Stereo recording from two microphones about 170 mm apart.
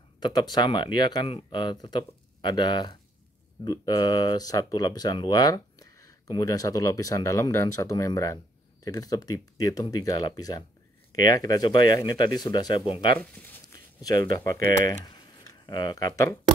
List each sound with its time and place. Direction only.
0.2 s speech: 25° left (ahead or behind)
13.2 s speech: 10° left (ahead or behind)
14.3 s speech: 20° left (ahead or behind)
15.0 s a sound: 25° left (ahead or behind)